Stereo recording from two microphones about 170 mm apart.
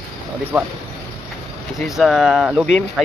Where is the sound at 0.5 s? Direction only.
5° right (ahead or behind).